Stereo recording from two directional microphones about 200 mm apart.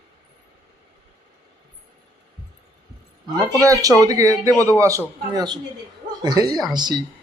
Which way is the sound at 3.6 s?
15° right (ahead or behind).